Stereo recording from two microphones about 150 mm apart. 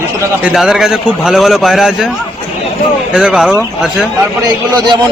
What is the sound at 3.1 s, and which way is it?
Speech, 5° right (ahead or behind).